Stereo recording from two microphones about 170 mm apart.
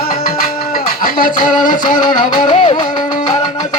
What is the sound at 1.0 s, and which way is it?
Music, 55° left (ahead or behind).